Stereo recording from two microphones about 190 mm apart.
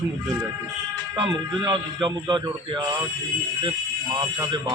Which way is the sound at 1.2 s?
25° right (ahead or behind).